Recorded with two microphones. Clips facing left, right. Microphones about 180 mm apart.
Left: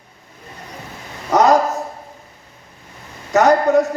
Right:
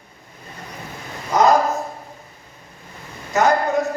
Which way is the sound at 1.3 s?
75° left (ahead or behind).